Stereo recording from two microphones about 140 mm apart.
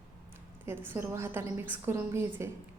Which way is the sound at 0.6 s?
15° right (ahead or behind).